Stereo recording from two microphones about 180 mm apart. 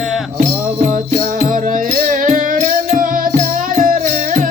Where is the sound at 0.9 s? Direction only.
50° right (ahead or behind).